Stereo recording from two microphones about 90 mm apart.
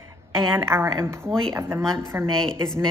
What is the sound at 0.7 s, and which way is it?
Speech, 30° right (ahead or behind).